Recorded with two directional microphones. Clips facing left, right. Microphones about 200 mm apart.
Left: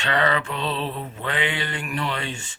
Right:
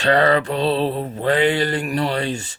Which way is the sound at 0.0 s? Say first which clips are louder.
Right 7 dB; 35° right (ahead or behind).